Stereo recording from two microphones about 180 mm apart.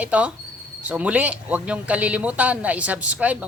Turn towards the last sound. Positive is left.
turn(degrees=-10)  # may be behind; listen again after turning